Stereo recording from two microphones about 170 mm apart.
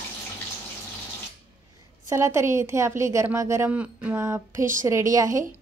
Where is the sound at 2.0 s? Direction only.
15° right (ahead or behind).